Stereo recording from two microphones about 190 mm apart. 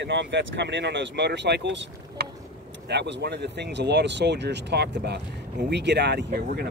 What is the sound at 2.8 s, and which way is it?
Speech, 60° right (ahead or behind).